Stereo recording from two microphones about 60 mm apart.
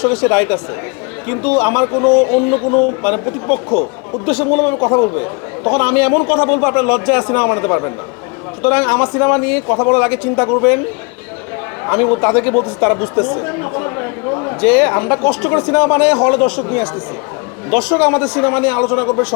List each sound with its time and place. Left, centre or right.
0.0 s a man's voice: left
4.7 s a man's voice: left
5.1 s a man's voice: left
8.6 s a man's voice: left
11.9 s speech: left
14.6 s a man's voice: left